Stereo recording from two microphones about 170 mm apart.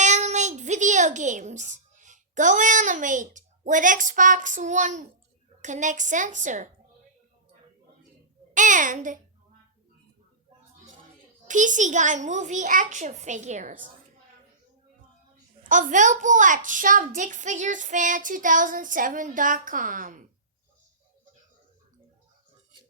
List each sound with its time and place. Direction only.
0.0 s a child's voice: 45° right (ahead or behind)
5.6 s child singing: 45° right (ahead or behind)
8.5 s child singing: 50° right (ahead or behind)
11.4 s child singing: 50° right (ahead or behind)
15.7 s child singing: 50° right (ahead or behind)